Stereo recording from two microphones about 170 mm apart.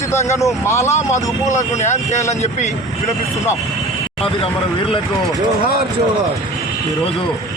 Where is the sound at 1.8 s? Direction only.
45° left (ahead or behind).